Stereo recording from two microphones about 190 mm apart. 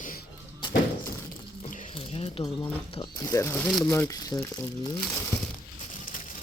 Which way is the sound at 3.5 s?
5° left (ahead or behind).